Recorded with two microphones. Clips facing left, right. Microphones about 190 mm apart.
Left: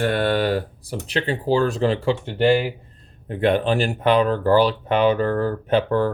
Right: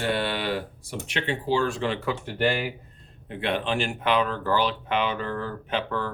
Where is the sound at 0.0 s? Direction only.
50° left (ahead or behind); by 2.7 s 25° left (ahead or behind).